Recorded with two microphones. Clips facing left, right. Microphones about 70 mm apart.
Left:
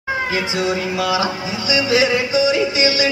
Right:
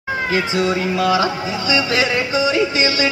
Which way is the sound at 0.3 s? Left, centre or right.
Right.